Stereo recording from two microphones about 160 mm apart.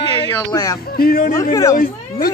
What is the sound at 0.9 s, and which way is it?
Speech, 70° left (ahead or behind).